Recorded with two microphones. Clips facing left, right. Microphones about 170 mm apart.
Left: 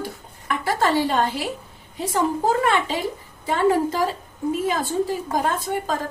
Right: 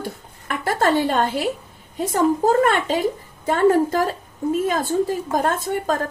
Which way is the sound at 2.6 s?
50° right (ahead or behind).